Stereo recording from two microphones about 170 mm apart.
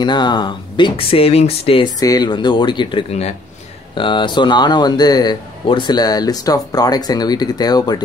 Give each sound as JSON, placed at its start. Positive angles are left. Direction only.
{"t": 0.0, "sound": "speech", "side_deg": 25}
{"t": 2.0, "sound": "speech", "side_deg": 20}